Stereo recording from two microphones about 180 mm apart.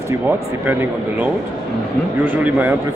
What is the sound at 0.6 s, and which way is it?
Speech, 10° right (ahead or behind).